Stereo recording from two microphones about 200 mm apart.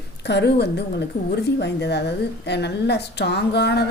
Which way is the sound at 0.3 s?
60° left (ahead or behind).